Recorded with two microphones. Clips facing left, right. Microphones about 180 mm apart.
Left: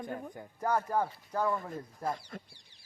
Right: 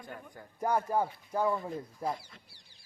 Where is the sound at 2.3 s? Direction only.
50° left (ahead or behind).